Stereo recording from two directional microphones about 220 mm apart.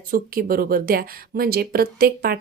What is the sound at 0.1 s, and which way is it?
Speech, 40° right (ahead or behind).